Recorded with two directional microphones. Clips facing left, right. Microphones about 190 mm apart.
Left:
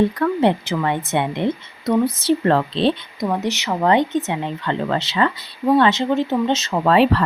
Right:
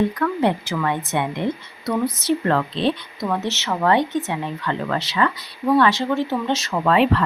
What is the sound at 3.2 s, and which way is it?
Speech, 15° left (ahead or behind).